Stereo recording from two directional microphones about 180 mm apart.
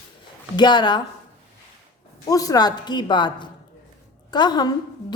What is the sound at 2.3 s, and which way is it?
A woman's voice, 20° left (ahead or behind).